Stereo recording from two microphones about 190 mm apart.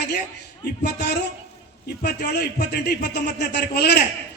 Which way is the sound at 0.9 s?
60° left (ahead or behind).